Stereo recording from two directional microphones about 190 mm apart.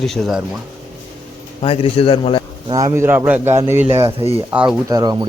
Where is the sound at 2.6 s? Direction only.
20° right (ahead or behind).